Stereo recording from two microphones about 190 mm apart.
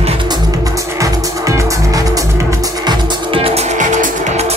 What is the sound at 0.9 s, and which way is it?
Music, 15° right (ahead or behind).